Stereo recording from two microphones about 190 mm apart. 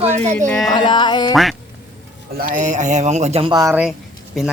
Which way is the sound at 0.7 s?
25° left (ahead or behind).